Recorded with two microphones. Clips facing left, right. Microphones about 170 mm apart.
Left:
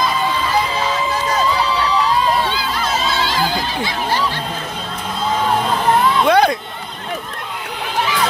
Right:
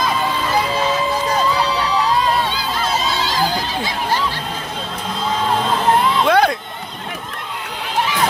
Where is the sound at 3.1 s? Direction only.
40° right (ahead or behind).